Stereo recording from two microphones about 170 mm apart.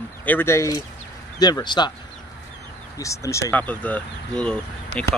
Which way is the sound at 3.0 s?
15° left (ahead or behind).